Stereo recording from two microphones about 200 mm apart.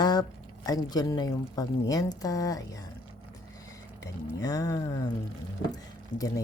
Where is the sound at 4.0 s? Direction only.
20° left (ahead or behind).